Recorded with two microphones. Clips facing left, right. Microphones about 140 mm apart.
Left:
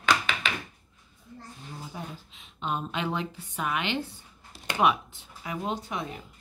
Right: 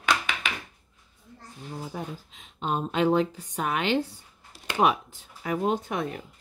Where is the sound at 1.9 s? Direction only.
45° right (ahead or behind).